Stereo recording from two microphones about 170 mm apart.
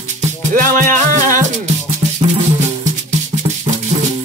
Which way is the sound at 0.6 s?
50° right (ahead or behind).